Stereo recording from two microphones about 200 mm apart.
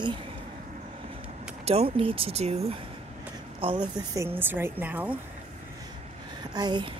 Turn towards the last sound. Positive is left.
turn(degrees=-20)  # may be behind; listen again after turning